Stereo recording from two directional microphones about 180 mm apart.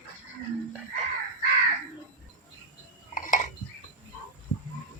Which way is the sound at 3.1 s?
45° left (ahead or behind).